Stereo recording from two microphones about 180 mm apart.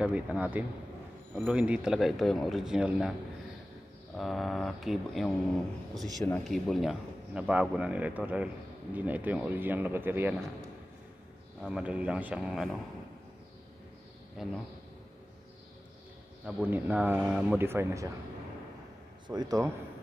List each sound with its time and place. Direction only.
0.0 s a man's voice: 5° right (ahead or behind)
4.2 s a man's voice: centre (ahead or behind)
11.6 s a man's voice: 5° right (ahead or behind)
14.3 s a man's voice: centre (ahead or behind)
16.4 s speech: 10° right (ahead or behind)
19.2 s speech: 20° right (ahead or behind)